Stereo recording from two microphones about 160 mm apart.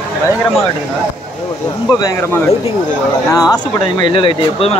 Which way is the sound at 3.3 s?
25° left (ahead or behind).